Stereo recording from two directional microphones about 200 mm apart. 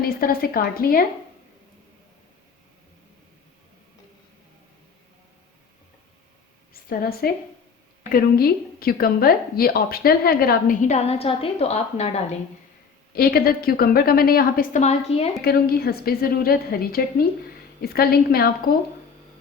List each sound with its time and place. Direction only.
0.0 s a woman's voice: 50° left (ahead or behind)
6.8 s a woman's voice: 50° left (ahead or behind); by 12.4 s 30° left (ahead or behind)
13.1 s a woman's voice: 50° left (ahead or behind); by 15.3 s 30° left (ahead or behind)
15.4 s a woman's voice: 50° left (ahead or behind)